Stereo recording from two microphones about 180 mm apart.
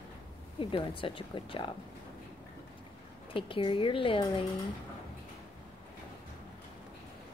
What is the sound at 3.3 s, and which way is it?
Speech, 30° left (ahead or behind).